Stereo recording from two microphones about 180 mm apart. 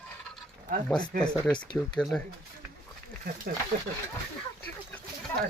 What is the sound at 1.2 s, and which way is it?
Speech, 5° left (ahead or behind).